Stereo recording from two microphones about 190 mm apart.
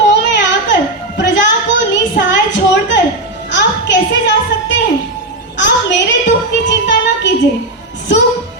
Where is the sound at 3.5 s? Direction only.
70° left (ahead or behind).